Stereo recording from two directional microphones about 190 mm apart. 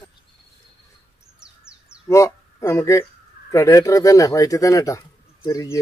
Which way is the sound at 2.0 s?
15° left (ahead or behind).